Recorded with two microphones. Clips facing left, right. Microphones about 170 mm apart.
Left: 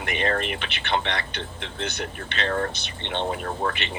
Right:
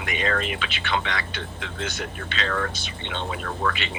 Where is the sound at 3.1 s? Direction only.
45° left (ahead or behind).